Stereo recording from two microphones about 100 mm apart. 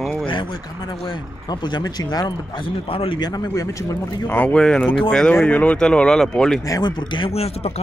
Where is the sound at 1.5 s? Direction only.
45° left (ahead or behind); by 3.2 s 60° left (ahead or behind).